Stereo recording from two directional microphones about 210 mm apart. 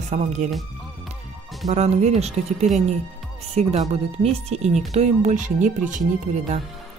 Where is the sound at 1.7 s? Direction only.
30° right (ahead or behind).